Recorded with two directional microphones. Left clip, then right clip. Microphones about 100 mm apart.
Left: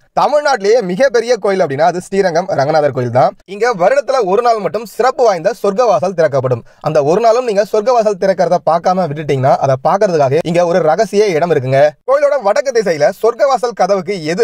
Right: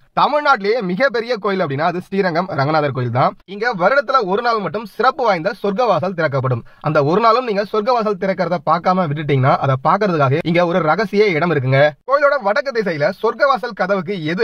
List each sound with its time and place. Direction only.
0.4 s a man's voice: 40° left (ahead or behind)